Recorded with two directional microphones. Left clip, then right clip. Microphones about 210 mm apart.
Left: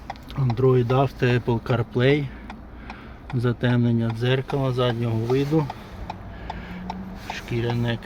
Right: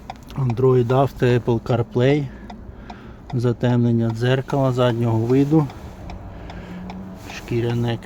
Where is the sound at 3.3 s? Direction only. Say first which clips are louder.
Right 3 dB; 20° right (ahead or behind).